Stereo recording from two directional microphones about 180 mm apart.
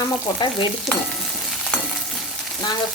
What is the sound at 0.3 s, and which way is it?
Speech, 25° left (ahead or behind).